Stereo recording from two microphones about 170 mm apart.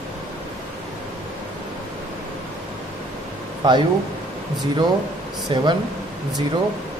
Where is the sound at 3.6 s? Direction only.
25° right (ahead or behind).